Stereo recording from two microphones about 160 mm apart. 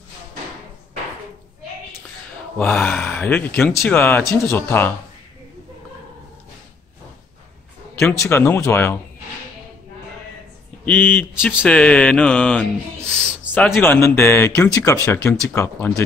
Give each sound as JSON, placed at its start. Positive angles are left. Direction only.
{"t": 2.5, "sound": "speech", "side_deg": 10}
{"t": 8.0, "sound": "speech", "side_deg": 0}
{"t": 8.3, "sound": "speech", "side_deg": 15}
{"t": 10.9, "sound": "speech", "side_deg": 10}
{"t": 13.0, "sound": "a sound", "side_deg": -10}
{"t": 13.7, "sound": "speech", "side_deg": 15}